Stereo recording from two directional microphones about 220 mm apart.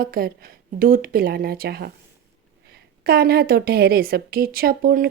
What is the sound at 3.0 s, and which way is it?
Speech, 45° right (ahead or behind).